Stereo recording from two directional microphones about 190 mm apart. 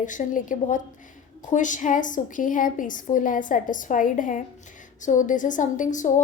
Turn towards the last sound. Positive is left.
turn(degrees=40)  # may be behind; listen again after turning